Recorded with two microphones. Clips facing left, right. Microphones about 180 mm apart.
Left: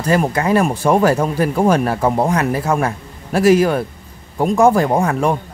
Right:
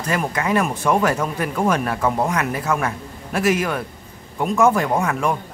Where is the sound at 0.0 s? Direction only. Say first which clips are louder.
Left 6 dB; 30° left (ahead or behind).